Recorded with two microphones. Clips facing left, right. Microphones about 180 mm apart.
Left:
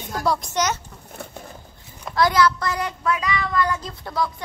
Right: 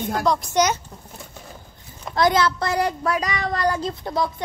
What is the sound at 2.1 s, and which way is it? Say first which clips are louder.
A child's voice: even; 25° right (ahead or behind).